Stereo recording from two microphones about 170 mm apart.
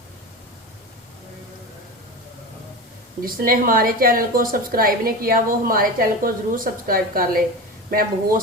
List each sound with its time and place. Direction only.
3.2 s a woman's voice: 55° right (ahead or behind)